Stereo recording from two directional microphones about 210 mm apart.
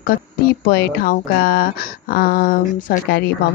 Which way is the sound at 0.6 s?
45° left (ahead or behind).